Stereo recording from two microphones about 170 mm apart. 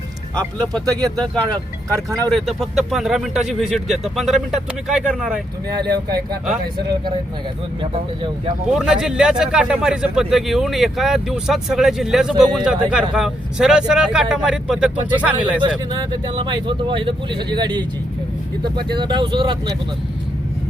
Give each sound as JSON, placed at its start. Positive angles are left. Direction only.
{"t": 0.3, "sound": "speech", "side_deg": 5}
{"t": 1.9, "sound": "speech", "side_deg": -20}
{"t": 2.3, "sound": "speech", "side_deg": 0}
{"t": 5.7, "sound": "speech", "side_deg": -25}
{"t": 8.7, "sound": "speech", "side_deg": -5}
{"t": 15.5, "sound": "speech", "side_deg": -25}
{"t": 18.9, "sound": "speech", "side_deg": -25}